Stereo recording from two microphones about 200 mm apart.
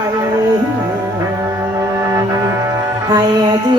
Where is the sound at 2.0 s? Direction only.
15° right (ahead or behind).